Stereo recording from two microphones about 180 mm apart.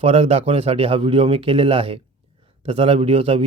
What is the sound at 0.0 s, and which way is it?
A man's voice, 35° right (ahead or behind).